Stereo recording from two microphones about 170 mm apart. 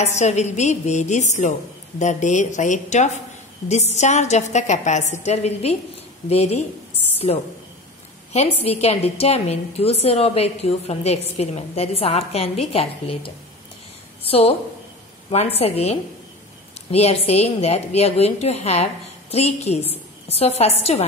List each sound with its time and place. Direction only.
0.0 s a woman's voice: 40° left (ahead or behind)
8.6 s a woman's voice: 35° left (ahead or behind)